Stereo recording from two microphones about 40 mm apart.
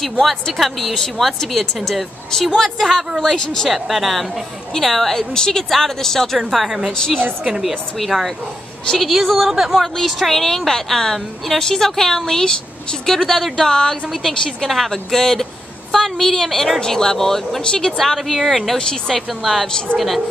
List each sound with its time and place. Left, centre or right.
0.2 s a woman's voice: centre
3.2 s a woman's voice: centre
3.7 s a woman's voice: centre
14.7 s a woman's voice: centre
17.9 s speech: centre
18.8 s speech: centre
19.1 s speech: centre